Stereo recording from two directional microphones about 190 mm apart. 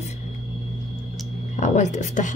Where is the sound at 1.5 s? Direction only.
40° left (ahead or behind).